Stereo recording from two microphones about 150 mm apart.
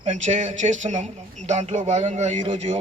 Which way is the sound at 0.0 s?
50° right (ahead or behind).